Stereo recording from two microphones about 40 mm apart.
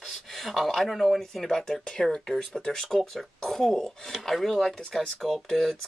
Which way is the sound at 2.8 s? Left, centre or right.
Centre.